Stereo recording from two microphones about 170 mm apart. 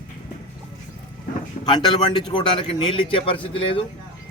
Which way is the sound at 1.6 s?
40° left (ahead or behind).